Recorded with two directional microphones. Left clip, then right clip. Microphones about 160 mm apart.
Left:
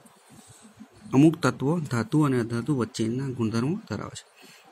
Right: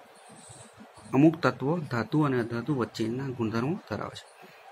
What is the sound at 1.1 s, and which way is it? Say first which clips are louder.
Speech: left 2 dB; 35° left (ahead or behind).